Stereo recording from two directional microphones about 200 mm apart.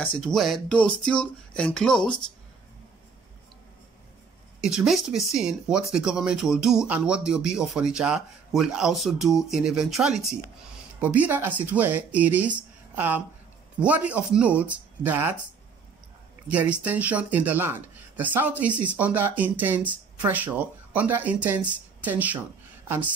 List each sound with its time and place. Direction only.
0.2 s speech: centre (ahead or behind)
4.6 s speech: 5° right (ahead or behind)
16.4 s speech: 5° right (ahead or behind)